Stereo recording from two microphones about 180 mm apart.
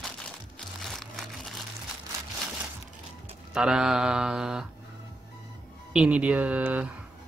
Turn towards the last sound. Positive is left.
turn(degrees=-10)  # may be behind; listen again after turning